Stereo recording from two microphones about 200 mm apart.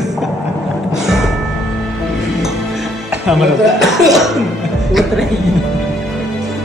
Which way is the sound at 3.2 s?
Centre (ahead or behind).